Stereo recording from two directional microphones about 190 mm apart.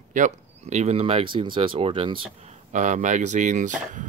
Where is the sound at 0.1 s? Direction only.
40° right (ahead or behind).